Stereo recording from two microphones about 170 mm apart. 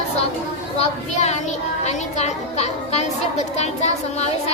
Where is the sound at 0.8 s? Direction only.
40° left (ahead or behind).